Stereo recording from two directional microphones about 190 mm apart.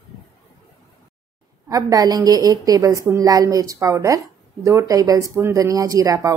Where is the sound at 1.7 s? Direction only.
20° right (ahead or behind).